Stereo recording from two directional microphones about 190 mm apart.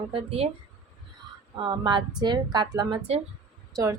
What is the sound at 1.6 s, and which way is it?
A woman's voice, 25° right (ahead or behind).